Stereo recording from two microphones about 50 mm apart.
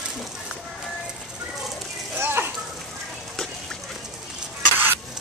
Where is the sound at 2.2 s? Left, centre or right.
Right.